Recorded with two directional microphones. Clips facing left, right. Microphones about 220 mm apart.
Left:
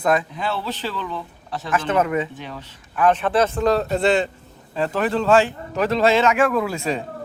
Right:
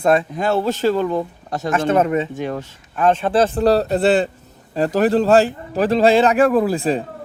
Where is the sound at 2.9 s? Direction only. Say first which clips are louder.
Right 2 dB; 25° right (ahead or behind).